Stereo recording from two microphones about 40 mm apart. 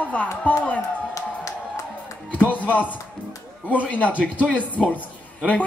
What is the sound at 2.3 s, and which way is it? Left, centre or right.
Speech, left.